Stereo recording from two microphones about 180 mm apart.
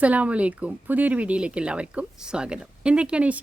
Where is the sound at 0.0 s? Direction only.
10° right (ahead or behind).